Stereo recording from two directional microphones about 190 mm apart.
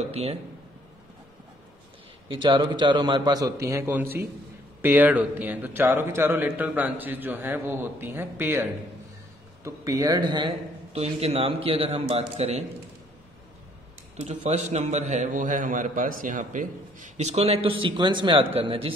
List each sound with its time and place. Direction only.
0.0 s a man's voice: 35° right (ahead or behind)
2.2 s a man's voice: 25° right (ahead or behind)
14.2 s a man's voice: 35° right (ahead or behind)